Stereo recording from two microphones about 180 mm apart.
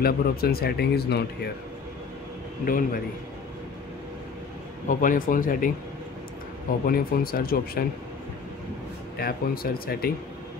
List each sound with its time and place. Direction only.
0.0 s speech: 60° left (ahead or behind)
2.6 s speech: 55° left (ahead or behind)
4.8 s speech: 50° left (ahead or behind)
6.9 s speech: 55° left (ahead or behind)
9.2 s speech: 55° left (ahead or behind)